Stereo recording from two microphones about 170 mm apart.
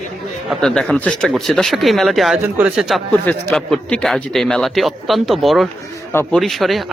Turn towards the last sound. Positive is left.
turn(degrees=0)  # may be behind; listen again after turning